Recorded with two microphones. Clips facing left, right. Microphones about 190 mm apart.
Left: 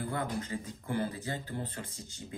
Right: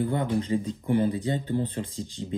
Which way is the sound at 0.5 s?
25° right (ahead or behind).